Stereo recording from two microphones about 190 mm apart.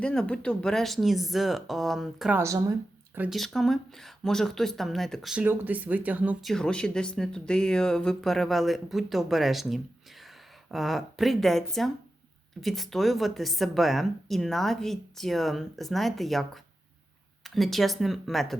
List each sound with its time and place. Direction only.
0.0 s speech: 5° left (ahead or behind)
2.4 s speech: 15° right (ahead or behind)
3.2 s speech: centre (ahead or behind)